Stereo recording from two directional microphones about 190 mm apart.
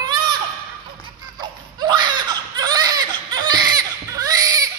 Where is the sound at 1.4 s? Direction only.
20° right (ahead or behind).